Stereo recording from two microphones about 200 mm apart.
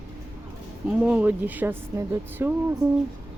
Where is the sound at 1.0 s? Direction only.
5° right (ahead or behind).